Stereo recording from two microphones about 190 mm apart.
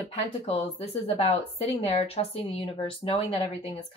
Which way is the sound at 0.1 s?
30° left (ahead or behind).